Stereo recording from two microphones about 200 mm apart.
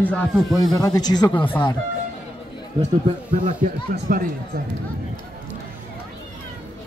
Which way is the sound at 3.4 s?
45° right (ahead or behind).